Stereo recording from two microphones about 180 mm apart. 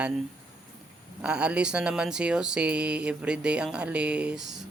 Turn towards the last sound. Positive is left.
turn(degrees=-5)  # may be behind; listen again after turning